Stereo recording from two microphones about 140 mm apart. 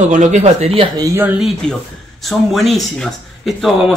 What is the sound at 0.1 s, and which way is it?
Speech, 55° right (ahead or behind).